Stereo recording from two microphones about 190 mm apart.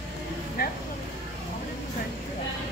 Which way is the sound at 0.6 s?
50° left (ahead or behind).